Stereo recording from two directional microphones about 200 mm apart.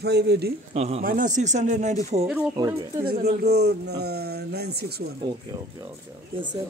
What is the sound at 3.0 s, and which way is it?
Speech, 55° right (ahead or behind).